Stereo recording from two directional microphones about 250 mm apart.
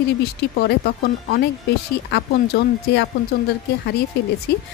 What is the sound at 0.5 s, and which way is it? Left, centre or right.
A woman's voice, left.